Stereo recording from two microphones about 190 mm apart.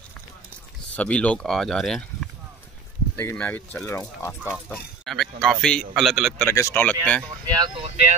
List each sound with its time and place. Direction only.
0.9 s speech: 5° left (ahead or behind)
6.4 s speech: 15° left (ahead or behind)
7.4 s speech: 20° right (ahead or behind)